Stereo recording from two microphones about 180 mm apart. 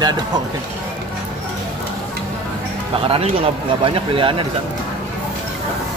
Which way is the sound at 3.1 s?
35° right (ahead or behind).